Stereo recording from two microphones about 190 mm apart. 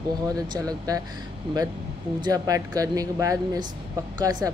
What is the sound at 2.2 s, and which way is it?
Speech, 20° right (ahead or behind).